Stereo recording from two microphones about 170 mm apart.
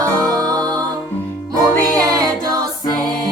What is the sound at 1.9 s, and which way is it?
Music, 20° right (ahead or behind).